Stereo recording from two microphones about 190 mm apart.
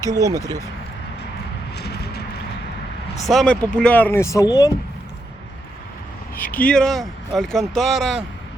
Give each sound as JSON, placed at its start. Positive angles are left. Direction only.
{"t": 0.0, "sound": "speech", "side_deg": -15}
{"t": 1.7, "sound": "a sound", "side_deg": 60}
{"t": 3.2, "sound": "speech", "side_deg": 5}
{"t": 6.3, "sound": "speech", "side_deg": 10}